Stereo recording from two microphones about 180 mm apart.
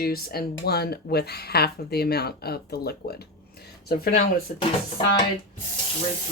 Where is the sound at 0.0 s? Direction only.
60° left (ahead or behind).